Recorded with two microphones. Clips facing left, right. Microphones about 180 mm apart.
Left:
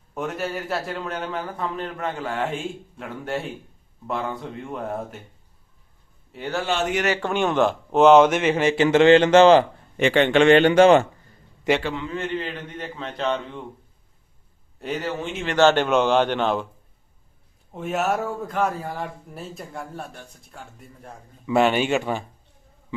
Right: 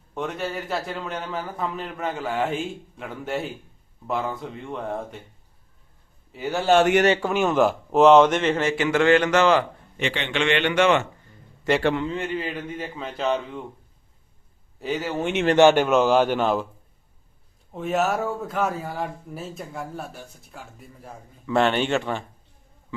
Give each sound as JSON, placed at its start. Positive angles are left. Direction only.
{"t": 0.1, "sound": "a man's voice", "side_deg": 0}
{"t": 6.3, "sound": "a man's voice", "side_deg": 0}
{"t": 8.8, "sound": "speech", "side_deg": 25}
{"t": 10.0, "sound": "a man's voice", "side_deg": 50}
{"t": 11.8, "sound": "a man's voice", "side_deg": -60}
{"t": 12.2, "sound": "a man's voice", "side_deg": -10}
{"t": 14.8, "sound": "a man's voice", "side_deg": 0}
{"t": 15.2, "sound": "speech", "side_deg": -75}
{"t": 15.5, "sound": "a man's voice", "side_deg": -10}
{"t": 17.7, "sound": "a man's voice", "side_deg": 0}
{"t": 21.4, "sound": "speech", "side_deg": 10}